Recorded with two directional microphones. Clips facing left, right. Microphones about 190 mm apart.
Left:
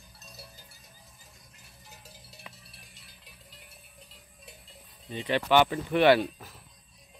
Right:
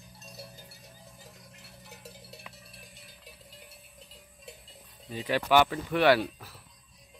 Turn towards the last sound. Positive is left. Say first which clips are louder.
# left 2 dB
turn(degrees=15)  # may be behind; listen again after turning